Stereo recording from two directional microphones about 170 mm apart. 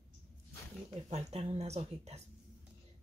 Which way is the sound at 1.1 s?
40° right (ahead or behind).